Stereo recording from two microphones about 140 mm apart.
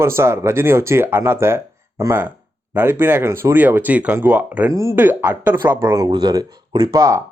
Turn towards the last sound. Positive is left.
turn(degrees=-25)  # may be behind; listen again after turning